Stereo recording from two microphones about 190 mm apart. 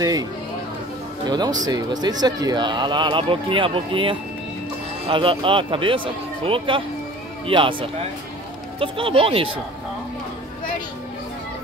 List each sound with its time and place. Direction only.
0.0 s speech: 20° right (ahead or behind)